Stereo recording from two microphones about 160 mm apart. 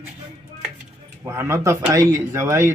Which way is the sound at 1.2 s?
15° right (ahead or behind).